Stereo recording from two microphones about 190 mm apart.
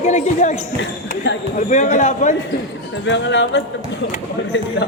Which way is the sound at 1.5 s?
40° left (ahead or behind).